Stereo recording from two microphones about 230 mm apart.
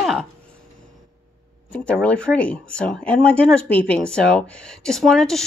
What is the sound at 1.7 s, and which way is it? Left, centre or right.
Speech, centre.